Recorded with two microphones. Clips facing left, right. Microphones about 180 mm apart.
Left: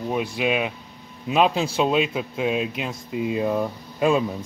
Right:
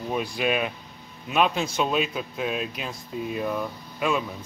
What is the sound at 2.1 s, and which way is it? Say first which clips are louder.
Speech: left 5 dB; 20° left (ahead or behind).